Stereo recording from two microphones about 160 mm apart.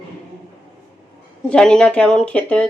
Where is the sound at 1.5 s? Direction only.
5° left (ahead or behind).